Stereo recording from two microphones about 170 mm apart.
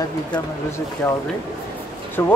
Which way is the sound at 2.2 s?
15° left (ahead or behind).